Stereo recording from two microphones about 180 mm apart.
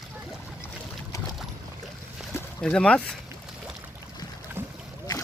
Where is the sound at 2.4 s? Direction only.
5° left (ahead or behind).